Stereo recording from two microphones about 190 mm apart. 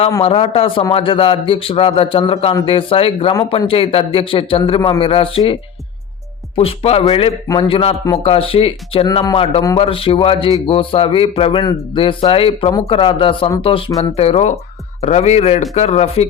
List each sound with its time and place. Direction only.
0.2 s speech: 30° left (ahead or behind)
6.6 s speech: 30° left (ahead or behind)